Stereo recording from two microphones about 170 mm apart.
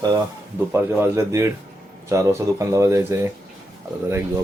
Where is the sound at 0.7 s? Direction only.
15° right (ahead or behind).